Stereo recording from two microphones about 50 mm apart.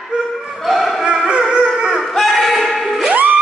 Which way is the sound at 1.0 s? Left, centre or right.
Centre.